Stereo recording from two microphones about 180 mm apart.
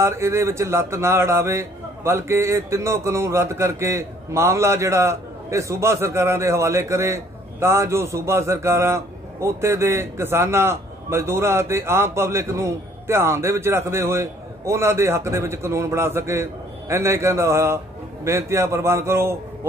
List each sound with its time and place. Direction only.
0.0 s a man's voice: 15° right (ahead or behind)